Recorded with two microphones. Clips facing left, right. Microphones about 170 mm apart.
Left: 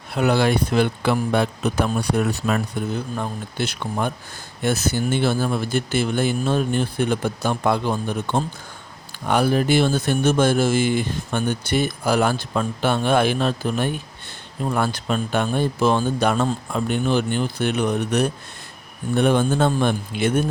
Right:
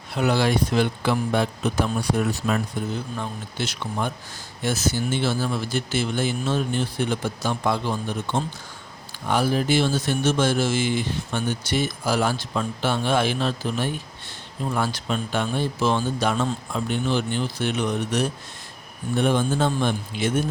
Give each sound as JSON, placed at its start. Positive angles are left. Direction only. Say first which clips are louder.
{"t": 0.2, "sound": "speech", "louder": "left 2 dB", "side_deg": 55}